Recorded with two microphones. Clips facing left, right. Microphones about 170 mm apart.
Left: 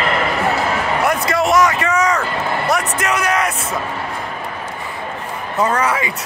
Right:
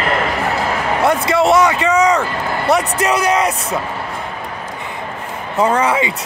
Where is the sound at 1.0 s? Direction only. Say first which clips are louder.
Right 5 dB; 30° right (ahead or behind).